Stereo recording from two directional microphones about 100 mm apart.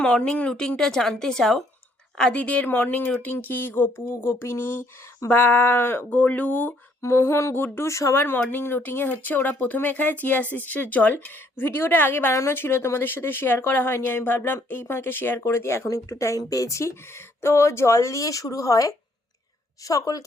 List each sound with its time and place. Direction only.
0.0 s a woman's voice: 10° left (ahead or behind); by 20.2 s 35° left (ahead or behind)